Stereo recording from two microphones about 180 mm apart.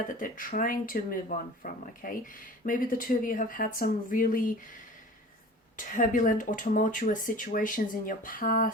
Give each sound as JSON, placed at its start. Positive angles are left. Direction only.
{"t": 0.2, "sound": "speech", "side_deg": 50}
{"t": 5.7, "sound": "speech", "side_deg": 45}